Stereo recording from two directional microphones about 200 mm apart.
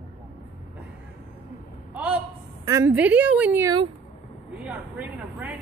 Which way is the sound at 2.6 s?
15° right (ahead or behind).